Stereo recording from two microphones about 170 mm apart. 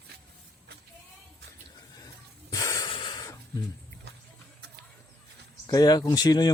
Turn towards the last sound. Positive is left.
turn(degrees=25)  # may be behind; listen again after turning